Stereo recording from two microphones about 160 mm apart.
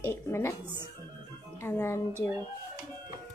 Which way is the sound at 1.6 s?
15° left (ahead or behind).